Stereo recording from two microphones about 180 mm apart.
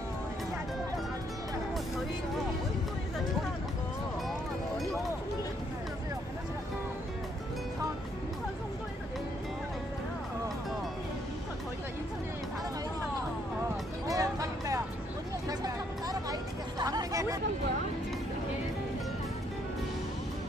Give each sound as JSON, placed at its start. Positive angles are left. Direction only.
{"t": 14.0, "sound": "music", "side_deg": -20}